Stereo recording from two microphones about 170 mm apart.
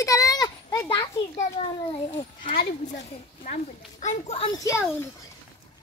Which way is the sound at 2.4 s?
55° left (ahead or behind).